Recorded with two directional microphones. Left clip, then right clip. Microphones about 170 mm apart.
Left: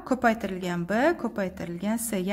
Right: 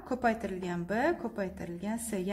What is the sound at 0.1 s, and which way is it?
A woman's voice, 25° left (ahead or behind).